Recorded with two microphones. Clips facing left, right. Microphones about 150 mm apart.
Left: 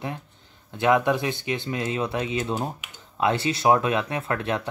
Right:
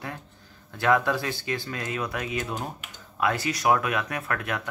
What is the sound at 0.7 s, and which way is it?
Speech, 20° left (ahead or behind).